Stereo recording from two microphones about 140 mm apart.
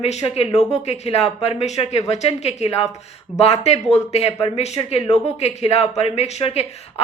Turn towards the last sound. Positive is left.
turn(degrees=50)  # may be behind; listen again after turning